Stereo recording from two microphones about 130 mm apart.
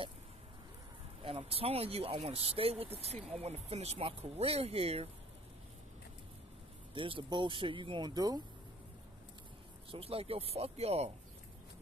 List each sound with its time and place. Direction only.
1.2 s speech: 45° right (ahead or behind)
6.9 s speech: 40° right (ahead or behind)
9.8 s speech: 50° right (ahead or behind)